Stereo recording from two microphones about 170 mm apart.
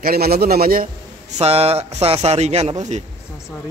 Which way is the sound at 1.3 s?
35° right (ahead or behind).